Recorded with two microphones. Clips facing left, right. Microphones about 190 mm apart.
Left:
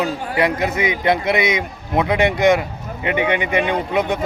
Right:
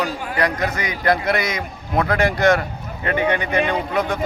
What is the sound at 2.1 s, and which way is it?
Speech, centre (ahead or behind).